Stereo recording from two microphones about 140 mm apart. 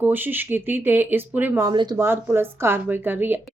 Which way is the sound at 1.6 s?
30° right (ahead or behind).